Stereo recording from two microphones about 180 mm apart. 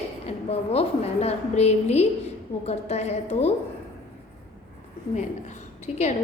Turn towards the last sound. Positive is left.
turn(degrees=40)  # may be behind; listen again after turning